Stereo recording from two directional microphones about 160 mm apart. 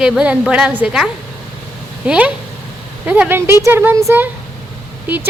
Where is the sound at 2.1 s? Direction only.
10° right (ahead or behind).